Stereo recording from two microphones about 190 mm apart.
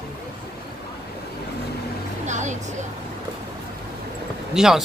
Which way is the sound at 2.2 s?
40° right (ahead or behind).